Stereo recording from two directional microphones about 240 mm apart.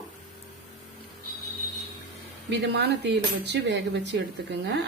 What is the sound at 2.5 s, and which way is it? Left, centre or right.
Cutlery, right.